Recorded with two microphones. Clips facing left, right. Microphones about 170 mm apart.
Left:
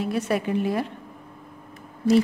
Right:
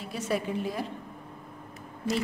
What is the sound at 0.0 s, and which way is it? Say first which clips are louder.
Speech: left 6 dB; 65° left (ahead or behind).